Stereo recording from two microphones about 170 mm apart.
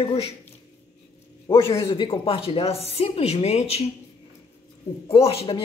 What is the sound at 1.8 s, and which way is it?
Speech, 30° left (ahead or behind).